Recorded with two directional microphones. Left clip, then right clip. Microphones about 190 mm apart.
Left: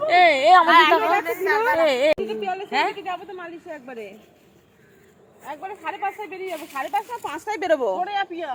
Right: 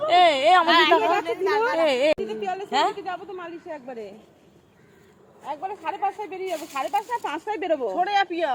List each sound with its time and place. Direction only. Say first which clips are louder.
0.0 s a woman's voice: left 2 dB; 10° right (ahead or behind)
3.3 s a woman's voice: even; 10° left (ahead or behind)
5.6 s speech: right 1 dB; 5° left (ahead or behind)
7.6 s a woman's voice: left 5 dB; 40° left (ahead or behind)
7.9 s speech: right 3 dB; 40° right (ahead or behind)